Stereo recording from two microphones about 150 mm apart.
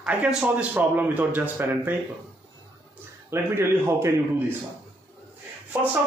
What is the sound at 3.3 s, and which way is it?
Speech, 15° right (ahead or behind).